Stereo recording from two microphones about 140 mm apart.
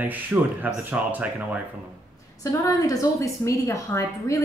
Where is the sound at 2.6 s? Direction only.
25° left (ahead or behind).